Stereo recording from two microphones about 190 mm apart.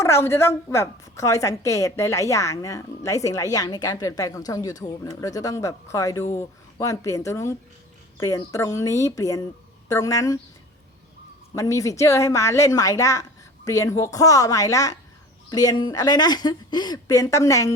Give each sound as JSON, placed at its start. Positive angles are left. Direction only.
{"t": 0.0, "sound": "a woman's voice", "side_deg": 15}
{"t": 11.5, "sound": "a woman's voice", "side_deg": 20}